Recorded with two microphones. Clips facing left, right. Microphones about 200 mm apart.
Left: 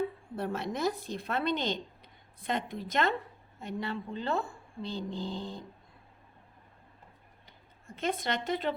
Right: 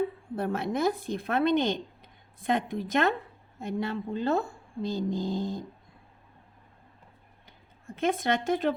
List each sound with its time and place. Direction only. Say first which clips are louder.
0.3 s a woman's voice: right 5 dB; 55° right (ahead or behind)
7.9 s a woman's voice: right 5 dB; 50° right (ahead or behind)